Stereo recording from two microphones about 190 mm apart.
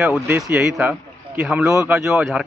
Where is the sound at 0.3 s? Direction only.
10° right (ahead or behind).